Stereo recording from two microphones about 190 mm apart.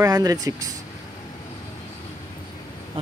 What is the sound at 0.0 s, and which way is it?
Speech, 20° right (ahead or behind).